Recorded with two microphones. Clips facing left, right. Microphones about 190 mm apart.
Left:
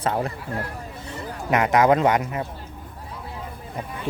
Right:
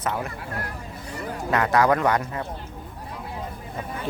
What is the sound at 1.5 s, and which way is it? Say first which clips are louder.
Speech: left 2 dB; 20° left (ahead or behind).